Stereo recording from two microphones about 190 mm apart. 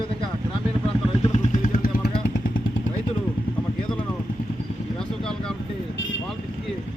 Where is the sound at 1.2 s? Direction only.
45° left (ahead or behind).